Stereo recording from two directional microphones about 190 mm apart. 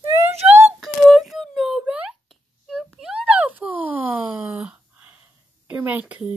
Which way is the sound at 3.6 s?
10° right (ahead or behind).